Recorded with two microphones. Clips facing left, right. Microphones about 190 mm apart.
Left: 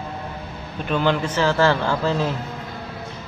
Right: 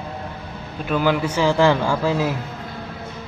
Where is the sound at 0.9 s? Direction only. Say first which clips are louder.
Right 1 dB; 5° right (ahead or behind).